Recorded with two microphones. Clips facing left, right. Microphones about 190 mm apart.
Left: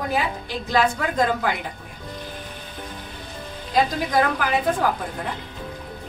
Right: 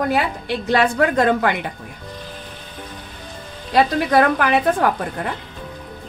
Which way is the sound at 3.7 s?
70° right (ahead or behind).